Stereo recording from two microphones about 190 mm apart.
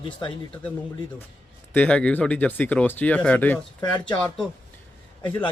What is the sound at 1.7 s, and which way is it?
Speech, 5° left (ahead or behind).